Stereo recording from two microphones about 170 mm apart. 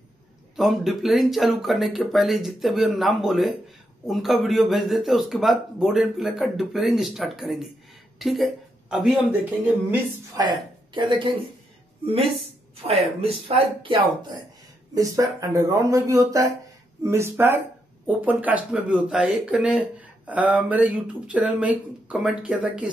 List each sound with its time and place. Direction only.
0.6 s a man's voice: centre (ahead or behind)
10.4 s a woman's voice: 25° right (ahead or behind)
15.0 s speech: 20° right (ahead or behind)